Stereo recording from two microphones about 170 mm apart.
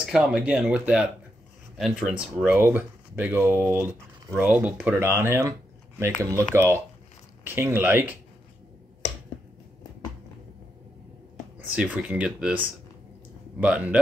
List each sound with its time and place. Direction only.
0.0 s speech: 5° right (ahead or behind)
11.5 s speech: 5° right (ahead or behind)